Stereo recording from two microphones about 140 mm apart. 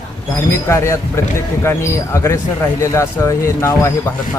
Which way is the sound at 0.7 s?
20° left (ahead or behind).